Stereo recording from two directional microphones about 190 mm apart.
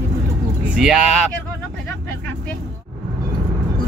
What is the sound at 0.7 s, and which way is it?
Speech, 5° right (ahead or behind).